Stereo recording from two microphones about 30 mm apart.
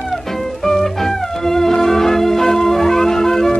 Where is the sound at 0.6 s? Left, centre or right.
Centre.